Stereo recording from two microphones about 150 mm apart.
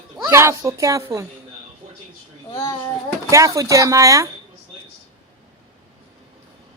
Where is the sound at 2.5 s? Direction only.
20° left (ahead or behind).